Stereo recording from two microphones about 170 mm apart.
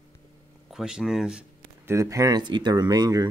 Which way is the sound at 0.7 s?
Centre (ahead or behind).